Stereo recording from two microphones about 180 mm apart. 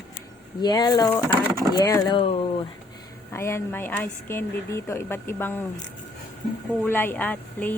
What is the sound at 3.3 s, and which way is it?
A woman's voice, 15° left (ahead or behind).